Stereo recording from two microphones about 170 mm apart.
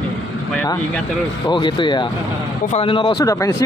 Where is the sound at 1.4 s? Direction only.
30° left (ahead or behind).